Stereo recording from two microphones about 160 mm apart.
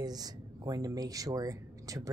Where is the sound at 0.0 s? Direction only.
25° right (ahead or behind).